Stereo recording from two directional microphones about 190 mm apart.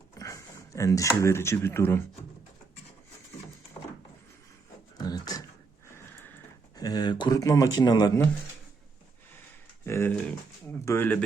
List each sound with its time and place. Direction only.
0.1 s speech: 15° left (ahead or behind)
4.9 s beatboxing: 20° left (ahead or behind)
6.7 s speech: 20° left (ahead or behind)
9.8 s speech: 15° left (ahead or behind)